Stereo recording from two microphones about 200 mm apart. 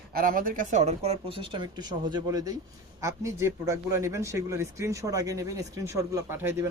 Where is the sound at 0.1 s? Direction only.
45° right (ahead or behind).